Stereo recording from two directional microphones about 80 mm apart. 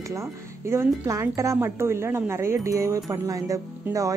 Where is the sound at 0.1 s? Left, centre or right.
Right.